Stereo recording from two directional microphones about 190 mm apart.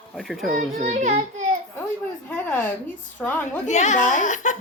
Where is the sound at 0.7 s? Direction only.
40° right (ahead or behind).